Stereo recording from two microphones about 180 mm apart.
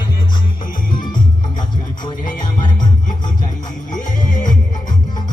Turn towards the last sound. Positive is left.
turn(degrees=45)  # may be behind; listen again after turning